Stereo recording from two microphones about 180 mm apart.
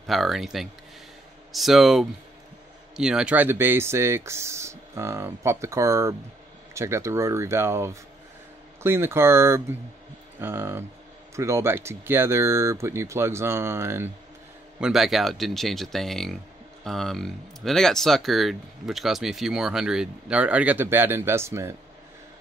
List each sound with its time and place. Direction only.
0.0 s speech: centre (ahead or behind)
14.8 s speech: centre (ahead or behind)